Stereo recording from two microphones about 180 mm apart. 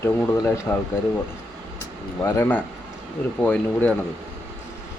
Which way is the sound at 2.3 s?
10° left (ahead or behind).